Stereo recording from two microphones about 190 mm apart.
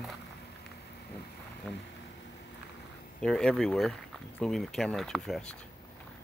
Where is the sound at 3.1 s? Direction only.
5° left (ahead or behind).